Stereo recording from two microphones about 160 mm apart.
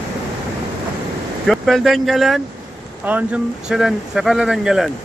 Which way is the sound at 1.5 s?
Centre (ahead or behind).